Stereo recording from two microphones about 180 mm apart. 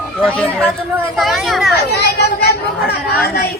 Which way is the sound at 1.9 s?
65° left (ahead or behind).